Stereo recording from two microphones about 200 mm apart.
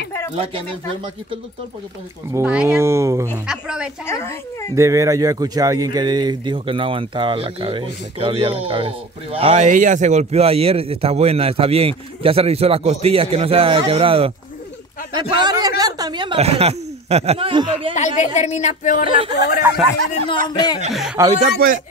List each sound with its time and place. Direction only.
0.4 s speech: 25° right (ahead or behind)
2.3 s speech: 5° right (ahead or behind)
3.4 s speech: 5° right (ahead or behind)
4.0 s speech: 10° left (ahead or behind)
4.7 s speech: 15° right (ahead or behind)
9.7 s speech: 40° right (ahead or behind)
17.9 s speech: 35° left (ahead or behind)
19.0 s speech: 25° right (ahead or behind)
19.3 s speech: 60° left (ahead or behind)
20.4 s speech: 20° left (ahead or behind)
20.9 s speech: centre (ahead or behind)